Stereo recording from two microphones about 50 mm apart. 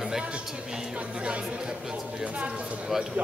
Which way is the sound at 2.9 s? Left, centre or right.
Centre.